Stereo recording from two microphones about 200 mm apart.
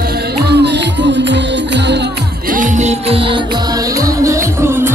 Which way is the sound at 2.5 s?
40° right (ahead or behind).